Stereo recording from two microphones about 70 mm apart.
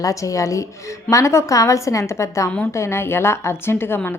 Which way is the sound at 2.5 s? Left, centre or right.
Centre.